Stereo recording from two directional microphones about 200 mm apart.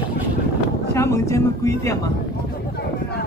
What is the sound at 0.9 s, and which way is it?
A man's voice, 15° left (ahead or behind).